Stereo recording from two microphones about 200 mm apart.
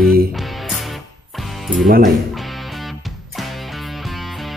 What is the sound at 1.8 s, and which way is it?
Speech, 50° right (ahead or behind).